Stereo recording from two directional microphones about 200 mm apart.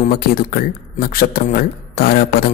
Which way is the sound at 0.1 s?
45° left (ahead or behind).